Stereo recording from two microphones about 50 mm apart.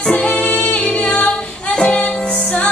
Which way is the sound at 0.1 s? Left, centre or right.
Left.